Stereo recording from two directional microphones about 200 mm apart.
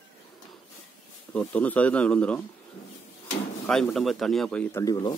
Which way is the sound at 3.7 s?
Centre (ahead or behind).